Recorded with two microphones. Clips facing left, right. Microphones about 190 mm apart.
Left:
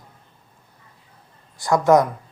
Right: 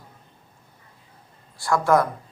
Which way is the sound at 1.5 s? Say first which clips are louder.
Left 4 dB; 20° left (ahead or behind).